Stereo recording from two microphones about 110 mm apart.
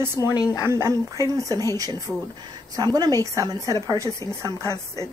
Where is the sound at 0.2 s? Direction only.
35° right (ahead or behind).